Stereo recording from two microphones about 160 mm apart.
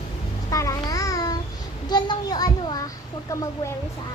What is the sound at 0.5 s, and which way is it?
Babbling, 20° left (ahead or behind).